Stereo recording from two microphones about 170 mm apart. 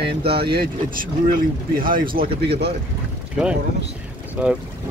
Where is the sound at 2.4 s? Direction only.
70° right (ahead or behind).